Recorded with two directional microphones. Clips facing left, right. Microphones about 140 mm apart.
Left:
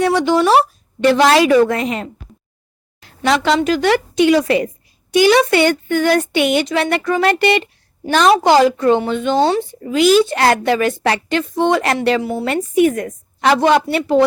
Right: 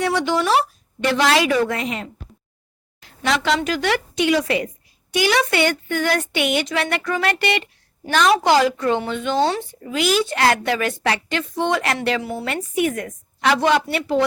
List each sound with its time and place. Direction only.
0.0 s speech: 35° left (ahead or behind)
3.2 s speech: 40° left (ahead or behind)